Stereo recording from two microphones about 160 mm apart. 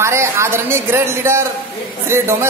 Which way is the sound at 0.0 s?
15° right (ahead or behind).